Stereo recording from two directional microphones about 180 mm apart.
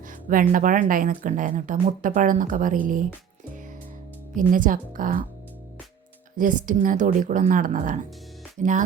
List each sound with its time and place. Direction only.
0.3 s speech: 50° right (ahead or behind)
4.4 s speech: 50° right (ahead or behind)
6.3 s speech: 45° right (ahead or behind)